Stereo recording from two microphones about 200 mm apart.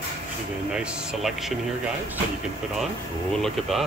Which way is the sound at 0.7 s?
5° right (ahead or behind).